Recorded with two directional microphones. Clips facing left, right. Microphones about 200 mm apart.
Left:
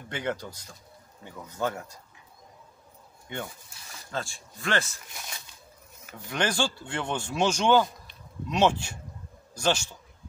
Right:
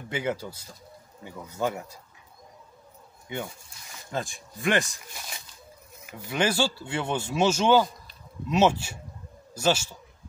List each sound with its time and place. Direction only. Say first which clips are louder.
0.1 s speech: right 2 dB; 5° right (ahead or behind)
3.3 s speech: right 2 dB; 5° right (ahead or behind)
4.1 s speech: right 3 dB; 15° right (ahead or behind)
6.0 s speech: right 3 dB; 10° right (ahead or behind)